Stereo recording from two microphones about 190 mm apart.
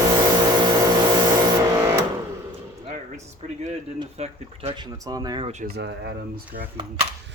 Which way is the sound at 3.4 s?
35° right (ahead or behind).